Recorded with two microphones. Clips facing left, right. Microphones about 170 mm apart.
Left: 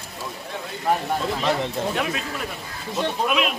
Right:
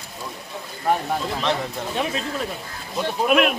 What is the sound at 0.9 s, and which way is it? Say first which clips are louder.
Speech: even; centre (ahead or behind).